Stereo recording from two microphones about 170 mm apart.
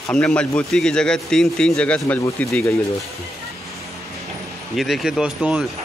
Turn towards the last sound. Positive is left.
turn(degrees=-5)  # may be behind; listen again after turning